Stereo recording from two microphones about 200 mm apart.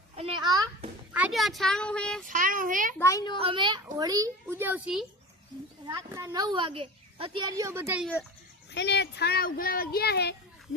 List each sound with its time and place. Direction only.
0.2 s a sound: 30° right (ahead or behind)
1.1 s speech: 5° right (ahead or behind)
2.2 s a child's voice: 40° right (ahead or behind)
3.0 s a child's voice: 15° left (ahead or behind)
3.4 s a child's voice: 25° right (ahead or behind)
8.7 s speech: 60° left (ahead or behind)